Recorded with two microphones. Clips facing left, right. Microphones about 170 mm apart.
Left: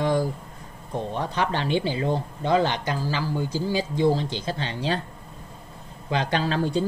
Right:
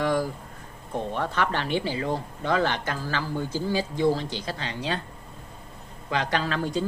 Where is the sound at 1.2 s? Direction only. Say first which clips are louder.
Left 2 dB; 15° left (ahead or behind); by 5.0 s 30° left (ahead or behind).